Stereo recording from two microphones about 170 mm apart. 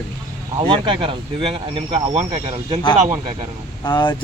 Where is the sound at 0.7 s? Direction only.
30° right (ahead or behind).